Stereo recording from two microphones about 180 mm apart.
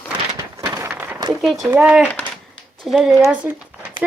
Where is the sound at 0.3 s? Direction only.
20° right (ahead or behind).